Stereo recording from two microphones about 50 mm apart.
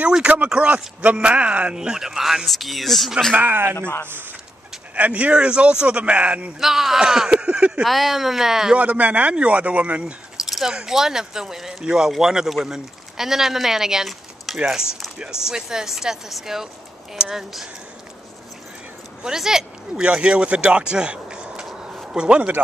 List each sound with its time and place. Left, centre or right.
0.1 s speech: right
1.8 s speech: centre
3.3 s speech: right
4.9 s speech: right
6.6 s a man's voice: centre
7.8 s a man's voice: centre
8.7 s speech: right
10.3 s a man's voice: centre
19.2 s speech: centre
21.8 s a sound: centre